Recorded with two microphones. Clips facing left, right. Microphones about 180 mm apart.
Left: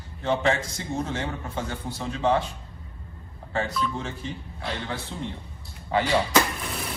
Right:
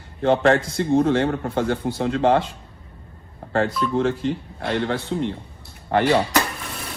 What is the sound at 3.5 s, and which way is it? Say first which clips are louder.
A man's voice: right 7 dB; 60° right (ahead or behind).